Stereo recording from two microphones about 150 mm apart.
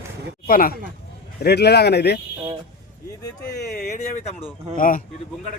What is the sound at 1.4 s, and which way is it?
Speech, 90° left.